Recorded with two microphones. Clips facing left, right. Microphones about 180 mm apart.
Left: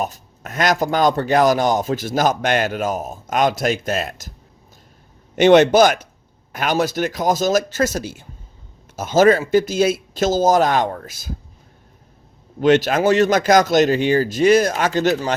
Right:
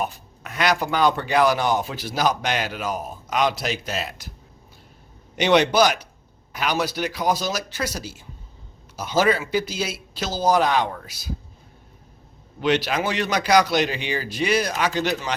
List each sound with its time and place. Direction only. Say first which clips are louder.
0.0 s speech: left 3 dB; 45° left (ahead or behind)
5.4 s speech: left 7 dB; 50° left (ahead or behind)
12.5 s speech: left 7 dB; 45° left (ahead or behind)